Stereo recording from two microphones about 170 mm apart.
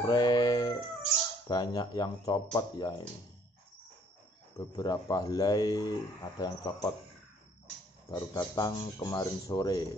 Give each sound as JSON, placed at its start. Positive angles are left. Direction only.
{"t": 0.0, "sound": "music", "side_deg": 25}
{"t": 1.5, "sound": "speech", "side_deg": 25}
{"t": 4.6, "sound": "speech", "side_deg": 25}
{"t": 8.1, "sound": "speech", "side_deg": 20}